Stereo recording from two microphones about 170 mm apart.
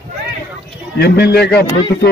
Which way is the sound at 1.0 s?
70° left (ahead or behind).